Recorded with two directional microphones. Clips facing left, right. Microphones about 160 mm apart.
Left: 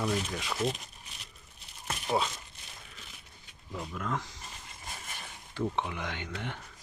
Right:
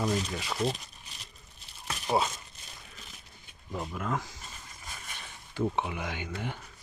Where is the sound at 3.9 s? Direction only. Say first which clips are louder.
Right 1 dB; 10° right (ahead or behind).